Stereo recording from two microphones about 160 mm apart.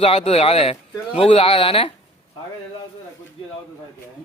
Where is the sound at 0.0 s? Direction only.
35° left (ahead or behind).